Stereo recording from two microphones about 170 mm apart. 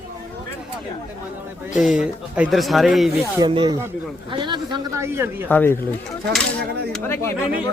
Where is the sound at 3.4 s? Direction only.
25° right (ahead or behind).